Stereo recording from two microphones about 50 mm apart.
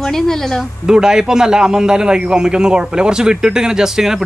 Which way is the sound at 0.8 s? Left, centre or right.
Centre.